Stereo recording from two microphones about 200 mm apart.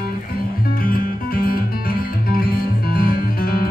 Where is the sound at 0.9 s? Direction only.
45° left (ahead or behind).